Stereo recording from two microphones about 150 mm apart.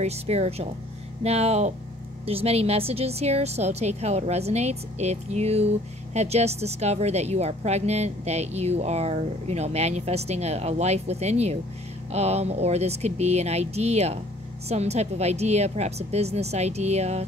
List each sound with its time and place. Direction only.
0.0 s a woman's voice: 45° right (ahead or behind)